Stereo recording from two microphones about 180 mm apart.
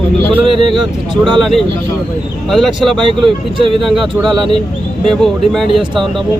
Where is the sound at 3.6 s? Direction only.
30° right (ahead or behind).